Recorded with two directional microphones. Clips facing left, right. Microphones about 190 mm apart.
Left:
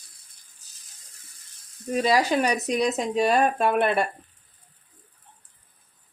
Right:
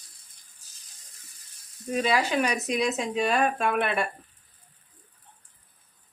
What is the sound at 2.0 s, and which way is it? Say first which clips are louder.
Speech: left 3 dB; 35° left (ahead or behind).